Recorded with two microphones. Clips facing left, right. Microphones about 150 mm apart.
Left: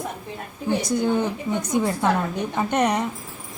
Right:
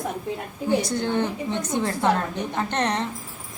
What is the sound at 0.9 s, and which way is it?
A woman's voice, 10° left (ahead or behind).